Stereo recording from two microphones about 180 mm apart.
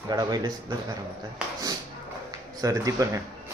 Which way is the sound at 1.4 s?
5° right (ahead or behind).